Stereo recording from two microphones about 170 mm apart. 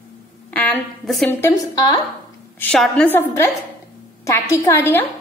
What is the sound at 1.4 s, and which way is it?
Speech, 25° left (ahead or behind).